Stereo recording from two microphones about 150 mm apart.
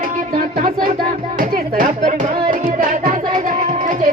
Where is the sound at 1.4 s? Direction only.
65° right (ahead or behind).